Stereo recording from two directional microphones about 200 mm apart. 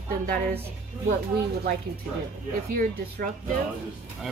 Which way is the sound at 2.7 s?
45° right (ahead or behind).